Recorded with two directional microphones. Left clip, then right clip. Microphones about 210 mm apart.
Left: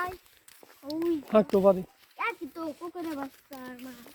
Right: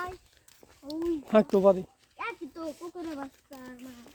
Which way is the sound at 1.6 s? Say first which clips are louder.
Even; 25° right (ahead or behind).